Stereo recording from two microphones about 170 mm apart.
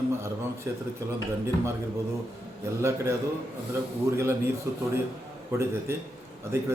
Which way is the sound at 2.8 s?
15° right (ahead or behind).